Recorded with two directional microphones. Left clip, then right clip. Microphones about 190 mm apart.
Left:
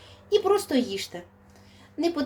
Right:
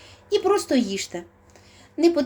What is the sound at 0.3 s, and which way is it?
A woman's voice, 25° right (ahead or behind).